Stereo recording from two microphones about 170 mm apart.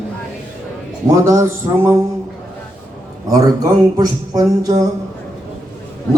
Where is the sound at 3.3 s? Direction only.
20° right (ahead or behind).